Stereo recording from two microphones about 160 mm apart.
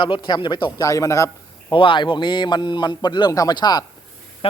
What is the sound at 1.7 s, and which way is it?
A man's voice, 30° left (ahead or behind).